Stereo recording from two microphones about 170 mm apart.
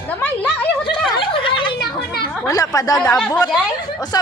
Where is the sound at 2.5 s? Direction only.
20° left (ahead or behind).